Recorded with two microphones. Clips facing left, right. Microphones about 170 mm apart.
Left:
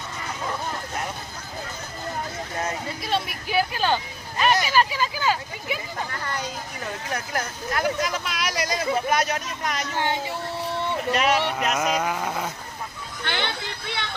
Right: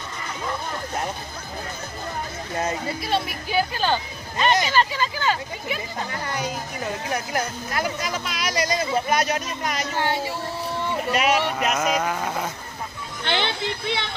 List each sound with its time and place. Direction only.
3.0 s a woman's voice: centre (ahead or behind)
6.1 s speech: 15° right (ahead or behind)
10.0 s speech: 15° left (ahead or behind)
10.8 s speech: 10° right (ahead or behind)
13.2 s speech: 20° right (ahead or behind)